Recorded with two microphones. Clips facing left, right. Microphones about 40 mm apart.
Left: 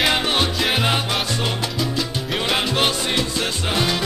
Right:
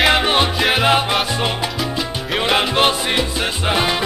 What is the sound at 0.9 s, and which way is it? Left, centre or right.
Music, right.